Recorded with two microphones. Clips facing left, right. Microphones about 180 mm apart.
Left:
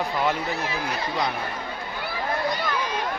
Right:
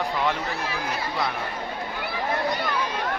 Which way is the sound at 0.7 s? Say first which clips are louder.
Left 1 dB; 20° left (ahead or behind).